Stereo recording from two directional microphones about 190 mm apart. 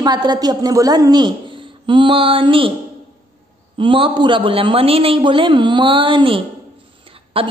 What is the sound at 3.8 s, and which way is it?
A woman's voice, 25° right (ahead or behind).